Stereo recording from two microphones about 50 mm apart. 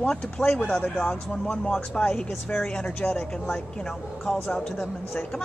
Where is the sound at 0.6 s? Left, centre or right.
Left.